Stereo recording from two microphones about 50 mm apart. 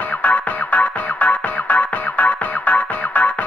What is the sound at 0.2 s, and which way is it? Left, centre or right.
Music, left.